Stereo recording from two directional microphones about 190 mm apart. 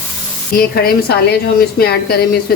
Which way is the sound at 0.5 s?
55° left (ahead or behind).